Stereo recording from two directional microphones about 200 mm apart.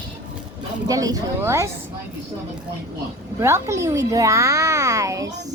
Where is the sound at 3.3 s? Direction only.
15° right (ahead or behind).